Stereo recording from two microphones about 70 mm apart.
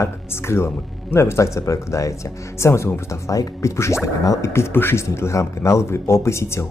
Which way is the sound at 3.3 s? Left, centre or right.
Left.